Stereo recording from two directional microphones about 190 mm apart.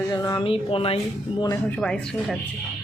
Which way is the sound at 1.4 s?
15° left (ahead or behind).